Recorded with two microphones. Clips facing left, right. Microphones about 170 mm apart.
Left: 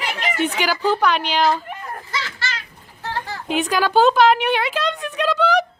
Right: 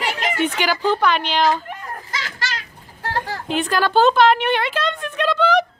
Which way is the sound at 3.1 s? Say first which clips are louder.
Right 3 dB; 45° right (ahead or behind).